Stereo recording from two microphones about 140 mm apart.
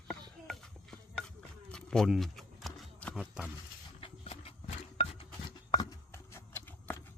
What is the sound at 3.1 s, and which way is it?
Speech, 5° right (ahead or behind).